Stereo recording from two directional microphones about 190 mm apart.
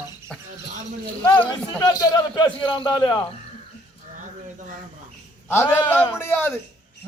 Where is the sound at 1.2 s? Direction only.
10° left (ahead or behind).